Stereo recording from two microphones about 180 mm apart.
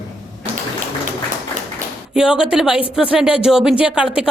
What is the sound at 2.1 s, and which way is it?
Speech, 5° right (ahead or behind).